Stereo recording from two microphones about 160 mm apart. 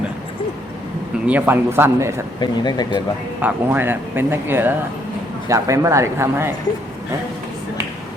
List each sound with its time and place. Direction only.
1.3 s speech: 10° right (ahead or behind)
2.4 s speech: 25° left (ahead or behind)
3.4 s speech: 10° right (ahead or behind)